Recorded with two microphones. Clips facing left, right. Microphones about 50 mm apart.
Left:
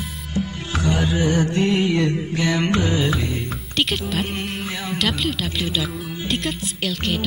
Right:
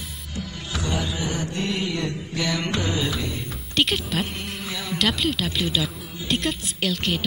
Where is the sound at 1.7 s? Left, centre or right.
Left.